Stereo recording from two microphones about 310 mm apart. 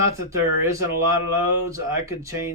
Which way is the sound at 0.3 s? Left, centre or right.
Centre.